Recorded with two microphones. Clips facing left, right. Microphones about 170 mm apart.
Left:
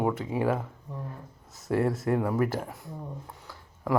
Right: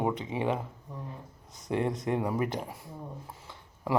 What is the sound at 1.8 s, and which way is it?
Speech, 5° left (ahead or behind).